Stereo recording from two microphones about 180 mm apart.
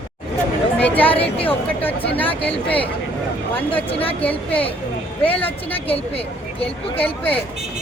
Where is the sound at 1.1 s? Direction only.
30° left (ahead or behind).